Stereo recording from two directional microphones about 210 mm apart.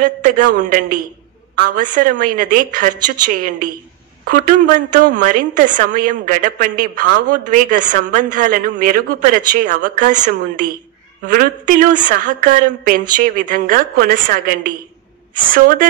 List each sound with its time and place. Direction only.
0.0 s a woman's voice: 40° right (ahead or behind)